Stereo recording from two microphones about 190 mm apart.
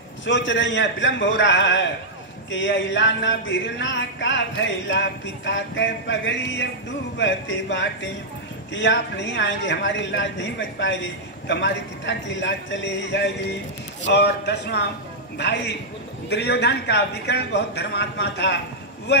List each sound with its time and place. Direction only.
0.2 s a woman's voice: 75° left (ahead or behind)